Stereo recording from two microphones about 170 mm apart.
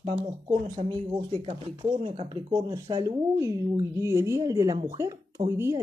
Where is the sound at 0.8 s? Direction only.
40° right (ahead or behind); by 5.1 s 15° right (ahead or behind).